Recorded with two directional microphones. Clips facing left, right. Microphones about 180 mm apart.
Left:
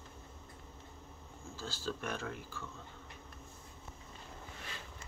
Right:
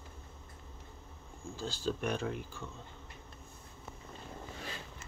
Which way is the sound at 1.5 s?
15° right (ahead or behind).